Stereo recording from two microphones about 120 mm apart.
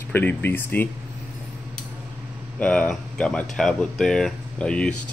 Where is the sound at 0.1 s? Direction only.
15° left (ahead or behind).